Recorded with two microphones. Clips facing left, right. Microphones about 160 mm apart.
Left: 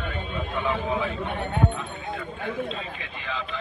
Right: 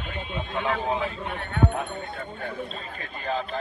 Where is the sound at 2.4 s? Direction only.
45° right (ahead or behind).